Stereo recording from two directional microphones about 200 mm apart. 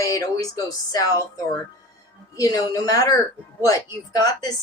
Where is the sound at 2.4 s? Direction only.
20° left (ahead or behind).